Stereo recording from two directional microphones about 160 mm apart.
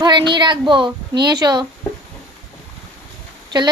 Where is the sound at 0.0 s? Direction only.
30° right (ahead or behind).